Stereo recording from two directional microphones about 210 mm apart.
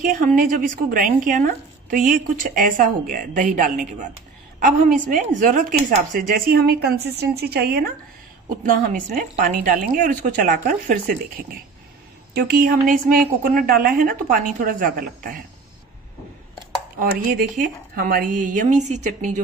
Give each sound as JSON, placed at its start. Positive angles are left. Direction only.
{"t": 0.0, "sound": "a woman's voice", "side_deg": -35}
{"t": 17.0, "sound": "speech", "side_deg": -45}